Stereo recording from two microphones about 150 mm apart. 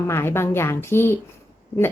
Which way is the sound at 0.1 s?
15° left (ahead or behind).